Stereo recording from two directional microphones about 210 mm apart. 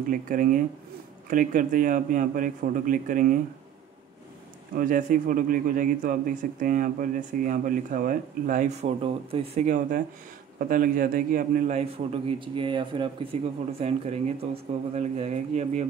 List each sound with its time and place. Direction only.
0.1 s a man's voice: 40° right (ahead or behind)
4.7 s a man's voice: 40° right (ahead or behind)